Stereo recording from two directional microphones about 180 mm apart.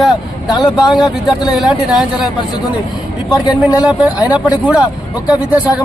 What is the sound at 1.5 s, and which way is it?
Speech, 5° right (ahead or behind).